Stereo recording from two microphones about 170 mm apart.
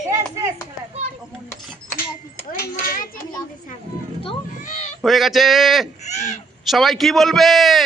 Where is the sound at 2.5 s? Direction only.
60° left (ahead or behind).